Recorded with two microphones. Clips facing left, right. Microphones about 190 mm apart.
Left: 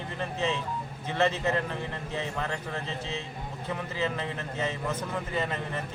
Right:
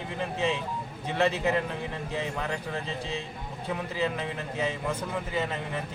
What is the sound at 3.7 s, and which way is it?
Speech, 10° right (ahead or behind).